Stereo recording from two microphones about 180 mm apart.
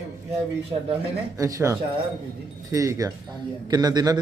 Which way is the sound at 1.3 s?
20° right (ahead or behind).